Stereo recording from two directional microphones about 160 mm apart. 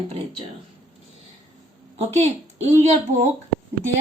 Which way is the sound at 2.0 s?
40° right (ahead or behind).